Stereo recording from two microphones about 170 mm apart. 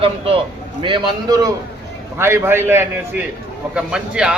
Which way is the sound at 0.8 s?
30° right (ahead or behind).